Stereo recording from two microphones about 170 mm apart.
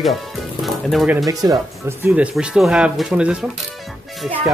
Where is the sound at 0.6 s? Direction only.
Centre (ahead or behind).